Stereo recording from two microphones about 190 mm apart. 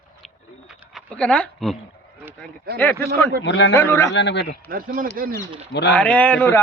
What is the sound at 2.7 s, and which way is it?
Speech, 10° left (ahead or behind).